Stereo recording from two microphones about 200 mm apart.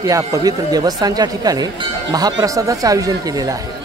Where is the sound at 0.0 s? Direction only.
15° right (ahead or behind).